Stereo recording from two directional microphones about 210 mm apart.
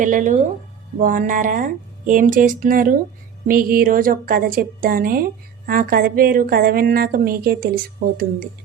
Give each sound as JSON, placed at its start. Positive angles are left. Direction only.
{"t": 0.0, "sound": "a woman's voice", "side_deg": -40}